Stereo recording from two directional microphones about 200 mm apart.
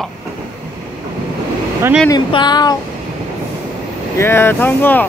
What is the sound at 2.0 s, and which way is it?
Speech, 20° left (ahead or behind).